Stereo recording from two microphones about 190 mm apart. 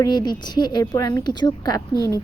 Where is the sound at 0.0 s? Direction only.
20° left (ahead or behind).